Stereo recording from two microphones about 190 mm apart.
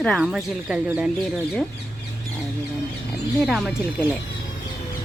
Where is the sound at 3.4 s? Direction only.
Centre (ahead or behind).